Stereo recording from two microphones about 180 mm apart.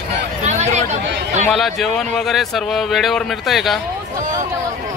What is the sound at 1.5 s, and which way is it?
A man's voice, centre (ahead or behind).